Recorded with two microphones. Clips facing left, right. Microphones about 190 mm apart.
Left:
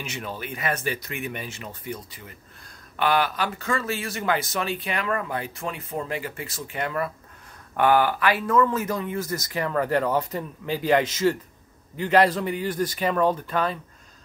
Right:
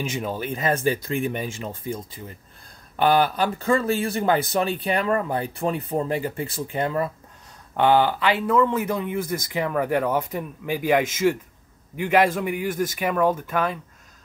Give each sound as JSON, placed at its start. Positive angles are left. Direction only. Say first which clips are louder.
{"t": 0.3, "sound": "speech", "louder": "right 4 dB", "side_deg": -30}
{"t": 3.0, "sound": "speech", "louder": "right 4 dB", "side_deg": -35}